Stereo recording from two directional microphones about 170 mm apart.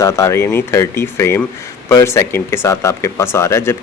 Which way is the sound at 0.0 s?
15° left (ahead or behind).